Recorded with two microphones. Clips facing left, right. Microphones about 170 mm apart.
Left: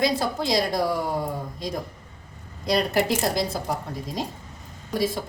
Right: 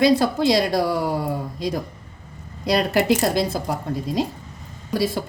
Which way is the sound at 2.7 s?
75° right (ahead or behind).